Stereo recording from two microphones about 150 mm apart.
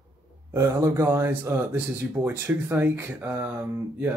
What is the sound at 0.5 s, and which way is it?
Speech, 15° right (ahead or behind).